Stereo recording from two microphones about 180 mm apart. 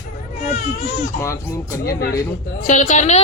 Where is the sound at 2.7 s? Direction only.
45° left (ahead or behind).